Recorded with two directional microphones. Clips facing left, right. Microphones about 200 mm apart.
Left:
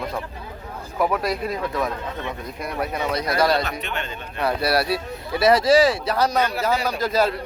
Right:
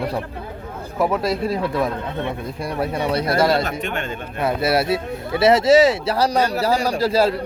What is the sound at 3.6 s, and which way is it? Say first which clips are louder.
Speech: right 3 dB; 45° right (ahead or behind).